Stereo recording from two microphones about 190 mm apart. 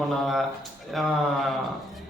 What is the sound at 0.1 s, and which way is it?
Speech, centre (ahead or behind).